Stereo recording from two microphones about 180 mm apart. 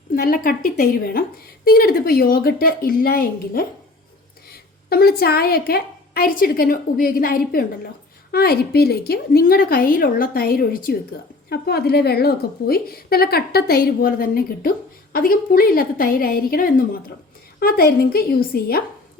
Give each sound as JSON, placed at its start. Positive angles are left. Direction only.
{"t": 0.1, "sound": "a woman's voice", "side_deg": 55}
{"t": 4.9, "sound": "a woman's voice", "side_deg": 60}